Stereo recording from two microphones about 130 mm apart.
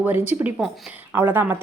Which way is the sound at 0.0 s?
15° right (ahead or behind).